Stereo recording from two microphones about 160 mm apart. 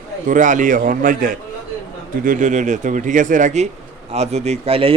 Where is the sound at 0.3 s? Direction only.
55° right (ahead or behind).